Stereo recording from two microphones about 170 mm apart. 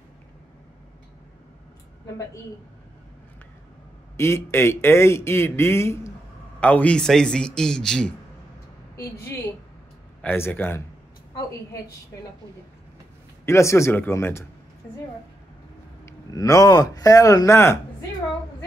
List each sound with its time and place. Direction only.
4.2 s a man's voice: 15° left (ahead or behind)
8.9 s a man's voice: 15° left (ahead or behind)
13.5 s a man's voice: 15° left (ahead or behind)
16.1 s a man's voice: 20° left (ahead or behind)